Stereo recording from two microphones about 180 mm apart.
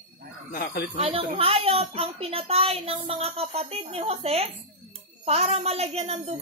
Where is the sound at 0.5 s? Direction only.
55° left (ahead or behind).